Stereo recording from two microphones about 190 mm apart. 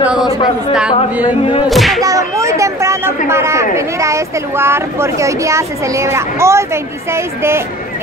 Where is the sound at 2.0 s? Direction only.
15° right (ahead or behind).